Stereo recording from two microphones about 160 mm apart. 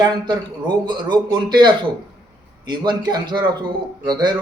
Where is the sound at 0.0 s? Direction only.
25° right (ahead or behind).